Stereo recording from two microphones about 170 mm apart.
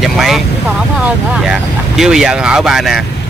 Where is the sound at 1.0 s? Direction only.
5° right (ahead or behind).